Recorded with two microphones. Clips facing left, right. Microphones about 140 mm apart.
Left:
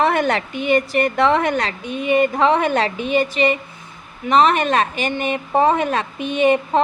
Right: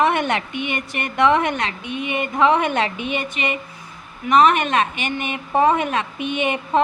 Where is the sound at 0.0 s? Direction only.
35° left (ahead or behind).